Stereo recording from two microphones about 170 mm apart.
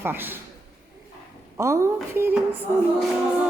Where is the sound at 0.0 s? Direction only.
10° right (ahead or behind).